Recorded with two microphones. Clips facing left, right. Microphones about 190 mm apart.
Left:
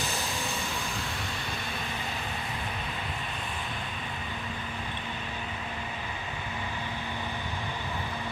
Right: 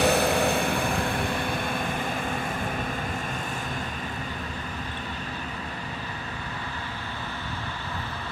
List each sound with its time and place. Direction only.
0.0 s vehicle: 65° right (ahead or behind)